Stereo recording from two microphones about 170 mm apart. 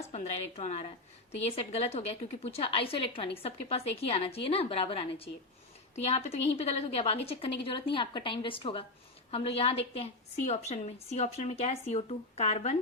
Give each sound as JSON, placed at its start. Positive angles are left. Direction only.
{"t": 0.1, "sound": "a woman's voice", "side_deg": 40}